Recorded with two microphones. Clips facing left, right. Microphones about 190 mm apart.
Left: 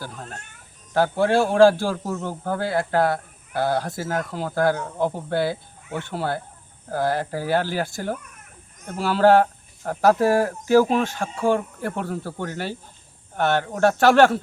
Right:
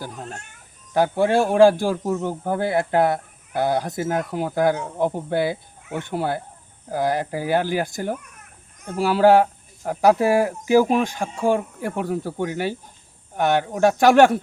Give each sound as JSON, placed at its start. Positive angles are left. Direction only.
{"t": 0.0, "sound": "a man's voice", "side_deg": -15}